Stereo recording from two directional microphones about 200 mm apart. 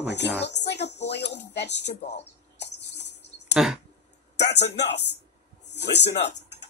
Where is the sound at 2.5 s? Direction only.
60° left (ahead or behind).